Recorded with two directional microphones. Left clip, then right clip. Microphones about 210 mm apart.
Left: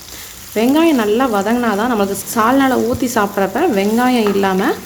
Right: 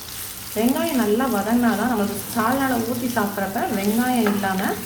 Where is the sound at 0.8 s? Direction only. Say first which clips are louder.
Left 11 dB; 55° left (ahead or behind).